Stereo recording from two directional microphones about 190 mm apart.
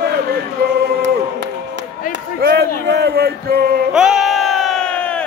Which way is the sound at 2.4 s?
60° right (ahead or behind).